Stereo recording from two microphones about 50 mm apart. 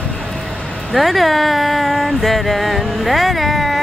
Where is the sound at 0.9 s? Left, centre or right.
Centre.